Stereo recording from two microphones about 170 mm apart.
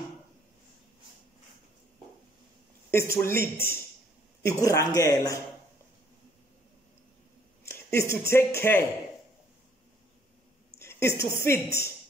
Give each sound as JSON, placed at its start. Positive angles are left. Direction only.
{"t": 2.9, "sound": "speech", "side_deg": 15}
{"t": 7.6, "sound": "speech", "side_deg": 15}
{"t": 10.8, "sound": "a woman's voice", "side_deg": 15}